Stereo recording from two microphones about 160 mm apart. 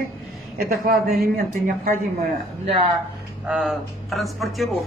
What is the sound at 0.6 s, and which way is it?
Speech, 65° right (ahead or behind).